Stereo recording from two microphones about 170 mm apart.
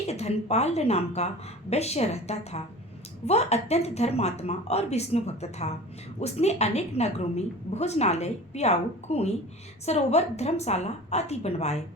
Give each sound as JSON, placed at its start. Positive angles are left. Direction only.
{"t": 0.1, "sound": "a woman's voice", "side_deg": 40}